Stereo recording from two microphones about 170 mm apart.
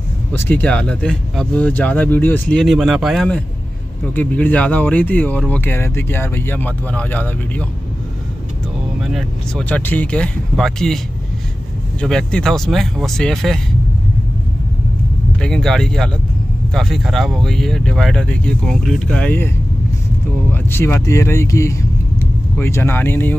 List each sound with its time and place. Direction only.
0.3 s speech: 10° left (ahead or behind)
9.0 s speech: centre (ahead or behind)
12.0 s speech: 5° left (ahead or behind)
15.3 s speech: 5° left (ahead or behind)
20.5 s speech: 15° left (ahead or behind)